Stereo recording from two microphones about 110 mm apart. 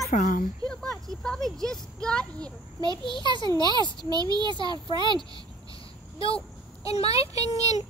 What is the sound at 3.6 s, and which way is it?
A child's voice, 40° right (ahead or behind).